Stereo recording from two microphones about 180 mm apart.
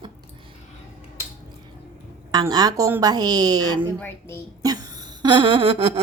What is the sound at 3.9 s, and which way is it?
Speech, 10° left (ahead or behind).